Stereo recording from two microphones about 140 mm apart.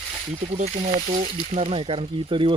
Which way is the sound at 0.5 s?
60° right (ahead or behind).